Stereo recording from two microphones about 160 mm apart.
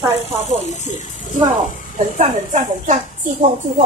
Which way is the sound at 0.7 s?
50° left (ahead or behind).